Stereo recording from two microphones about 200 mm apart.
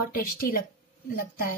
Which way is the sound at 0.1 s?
45° left (ahead or behind).